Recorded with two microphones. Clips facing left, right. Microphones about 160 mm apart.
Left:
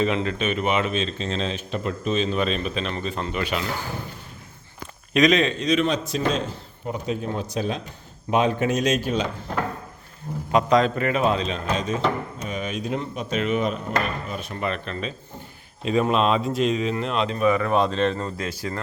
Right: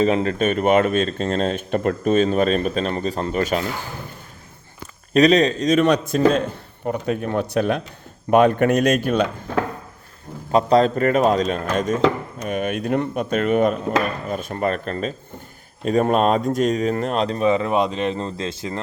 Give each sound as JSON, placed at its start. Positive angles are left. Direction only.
{"t": 0.0, "sound": "speech", "side_deg": -40}
{"t": 5.1, "sound": "speech", "side_deg": -35}
{"t": 5.8, "sound": "a man's voice", "side_deg": -60}
{"t": 10.5, "sound": "a man's voice", "side_deg": -35}
{"t": 18.2, "sound": "speech", "side_deg": -25}